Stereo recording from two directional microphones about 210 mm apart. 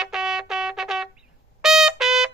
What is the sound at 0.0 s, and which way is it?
Trumpet, centre (ahead or behind).